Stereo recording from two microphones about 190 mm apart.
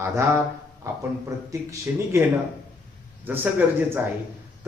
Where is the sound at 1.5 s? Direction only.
15° right (ahead or behind).